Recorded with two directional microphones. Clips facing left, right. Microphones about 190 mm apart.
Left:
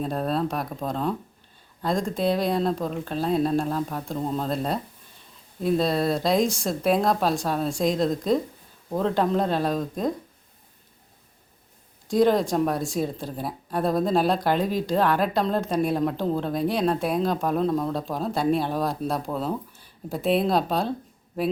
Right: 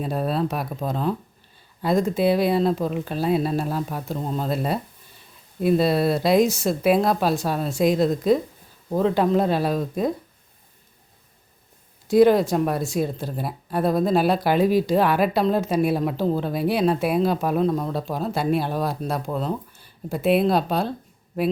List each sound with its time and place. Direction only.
0.0 s speech: 5° right (ahead or behind)
12.0 s speech: 5° right (ahead or behind)